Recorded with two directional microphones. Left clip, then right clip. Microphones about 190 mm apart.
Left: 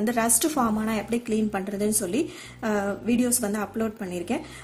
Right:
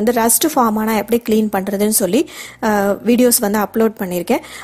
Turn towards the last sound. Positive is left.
turn(degrees=-45)  # may be behind; listen again after turning